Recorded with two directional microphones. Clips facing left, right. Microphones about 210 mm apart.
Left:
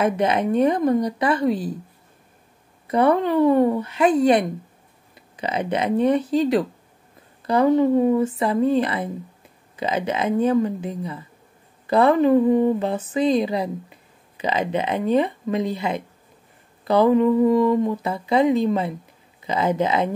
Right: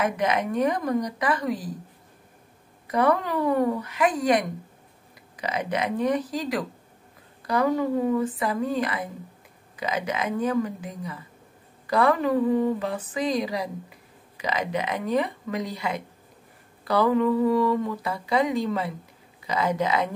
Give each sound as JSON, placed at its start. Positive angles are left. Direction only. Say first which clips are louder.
{"t": 0.0, "sound": "speech", "louder": "left 5 dB", "side_deg": 30}
{"t": 2.9, "sound": "speech", "louder": "left 5 dB", "side_deg": 25}